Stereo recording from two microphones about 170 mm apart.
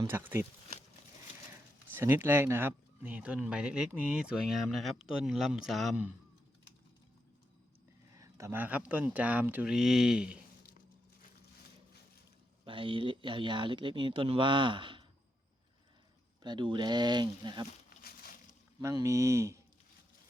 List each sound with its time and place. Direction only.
0.1 s speech: 10° right (ahead or behind)
1.5 s speech: 15° right (ahead or behind)
8.1 s speech: 20° right (ahead or behind)
12.6 s speech: 30° right (ahead or behind)
16.4 s speech: 25° right (ahead or behind)
18.0 s a sound: 60° left (ahead or behind)
18.8 s speech: 15° right (ahead or behind)